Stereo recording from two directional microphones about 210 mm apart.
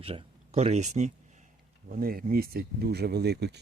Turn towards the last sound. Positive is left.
turn(degrees=-50)  # may be behind; listen again after turning